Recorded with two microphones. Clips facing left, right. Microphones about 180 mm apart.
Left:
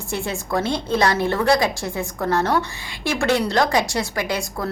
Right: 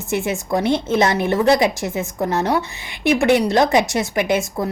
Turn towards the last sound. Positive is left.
turn(degrees=-20)  # may be behind; listen again after turning